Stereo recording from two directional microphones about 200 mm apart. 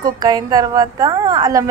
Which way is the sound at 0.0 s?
15° right (ahead or behind).